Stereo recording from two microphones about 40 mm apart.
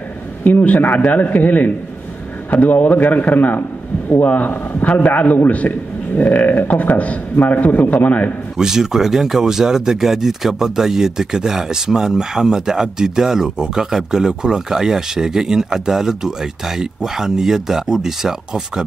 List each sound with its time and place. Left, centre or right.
0.4 s a man's voice: left
8.5 s speech: centre